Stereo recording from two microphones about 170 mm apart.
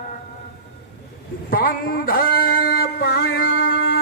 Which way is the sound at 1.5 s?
60° left (ahead or behind).